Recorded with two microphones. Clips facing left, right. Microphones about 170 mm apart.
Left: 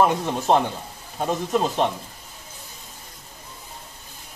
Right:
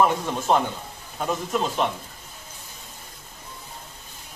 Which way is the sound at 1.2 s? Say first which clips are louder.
Left 3 dB; 30° left (ahead or behind).